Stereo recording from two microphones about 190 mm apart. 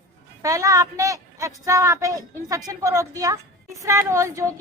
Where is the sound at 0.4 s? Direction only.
15° right (ahead or behind).